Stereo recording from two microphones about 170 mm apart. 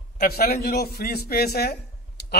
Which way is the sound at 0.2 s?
65° left (ahead or behind).